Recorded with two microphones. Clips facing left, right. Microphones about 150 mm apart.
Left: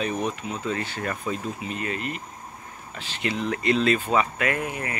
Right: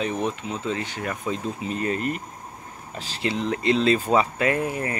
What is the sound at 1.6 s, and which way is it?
Speech, 35° right (ahead or behind).